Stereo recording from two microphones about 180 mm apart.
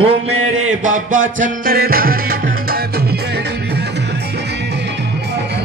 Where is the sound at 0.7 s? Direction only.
45° right (ahead or behind).